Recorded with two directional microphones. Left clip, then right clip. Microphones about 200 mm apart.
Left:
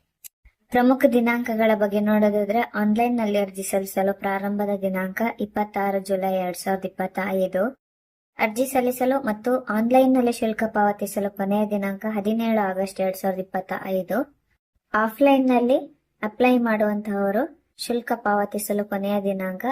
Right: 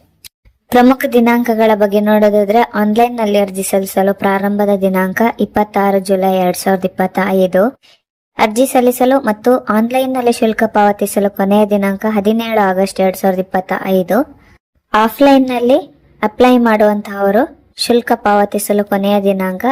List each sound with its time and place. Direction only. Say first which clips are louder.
0.7 s speech: right 8 dB; 35° right (ahead or behind)